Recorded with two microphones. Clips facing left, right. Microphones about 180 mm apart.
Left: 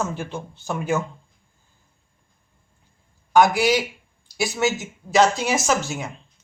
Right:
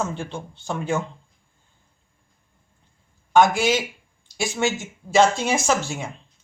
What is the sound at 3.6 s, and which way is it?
Speech, 25° right (ahead or behind).